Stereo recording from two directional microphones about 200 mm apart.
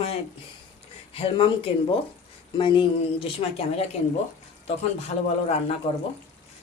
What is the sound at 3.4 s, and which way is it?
Speech, 30° left (ahead or behind).